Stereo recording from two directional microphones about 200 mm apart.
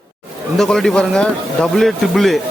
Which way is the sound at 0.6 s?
Centre (ahead or behind).